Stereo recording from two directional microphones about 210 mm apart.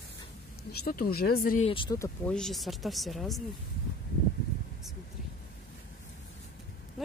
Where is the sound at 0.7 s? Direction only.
45° left (ahead or behind).